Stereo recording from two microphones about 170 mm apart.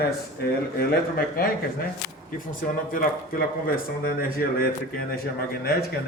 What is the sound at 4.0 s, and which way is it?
Speech, 60° left (ahead or behind).